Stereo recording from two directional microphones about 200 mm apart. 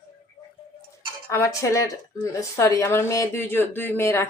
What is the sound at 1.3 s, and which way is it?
Speech, 15° left (ahead or behind).